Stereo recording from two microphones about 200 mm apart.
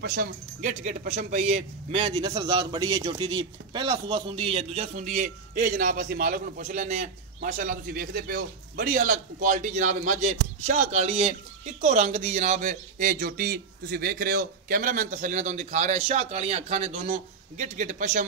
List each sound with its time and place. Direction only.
0.0 s speech: 50° right (ahead or behind)